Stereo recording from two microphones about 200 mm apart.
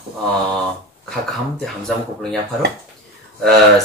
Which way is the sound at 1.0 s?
5° left (ahead or behind).